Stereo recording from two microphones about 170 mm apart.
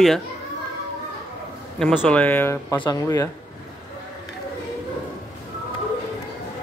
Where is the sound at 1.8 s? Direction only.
5° left (ahead or behind); by 3.2 s 20° left (ahead or behind).